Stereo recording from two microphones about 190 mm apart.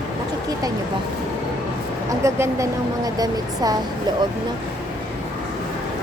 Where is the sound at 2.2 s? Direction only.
15° right (ahead or behind).